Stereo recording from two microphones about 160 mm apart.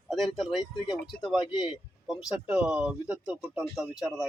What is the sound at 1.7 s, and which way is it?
Speech, centre (ahead or behind).